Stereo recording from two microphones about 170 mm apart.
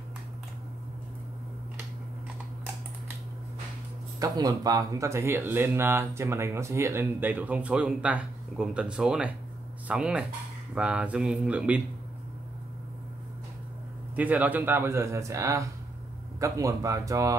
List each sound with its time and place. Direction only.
4.2 s speech: 20° right (ahead or behind)
14.1 s speech: 10° right (ahead or behind)